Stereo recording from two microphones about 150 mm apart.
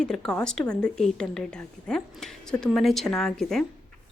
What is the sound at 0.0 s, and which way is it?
A woman's voice, 5° left (ahead or behind).